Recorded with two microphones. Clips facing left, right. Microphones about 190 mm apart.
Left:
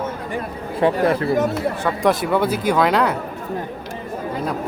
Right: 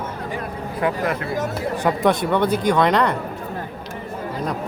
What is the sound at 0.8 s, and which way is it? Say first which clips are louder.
Speech: left 5 dB; 30° left (ahead or behind).